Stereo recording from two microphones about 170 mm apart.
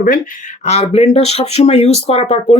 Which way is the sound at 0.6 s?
40° left (ahead or behind).